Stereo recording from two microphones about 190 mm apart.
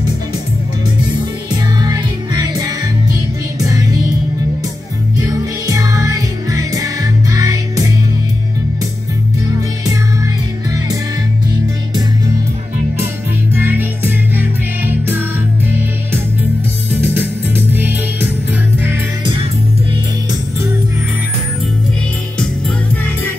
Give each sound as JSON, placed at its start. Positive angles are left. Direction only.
{"t": 1.5, "sound": "music", "side_deg": -20}
{"t": 5.2, "sound": "music", "side_deg": -15}
{"t": 9.8, "sound": "music", "side_deg": -20}
{"t": 13.6, "sound": "music", "side_deg": -10}
{"t": 16.9, "sound": "music", "side_deg": -10}